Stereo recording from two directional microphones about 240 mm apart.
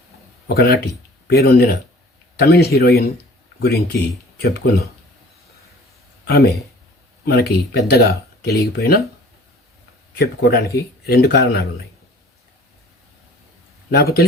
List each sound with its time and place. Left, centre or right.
0.4 s speech: left
6.2 s speech: left
10.2 s speech: left
13.9 s speech: left